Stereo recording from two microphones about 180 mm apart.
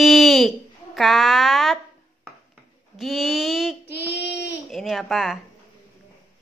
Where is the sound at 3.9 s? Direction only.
65° left (ahead or behind).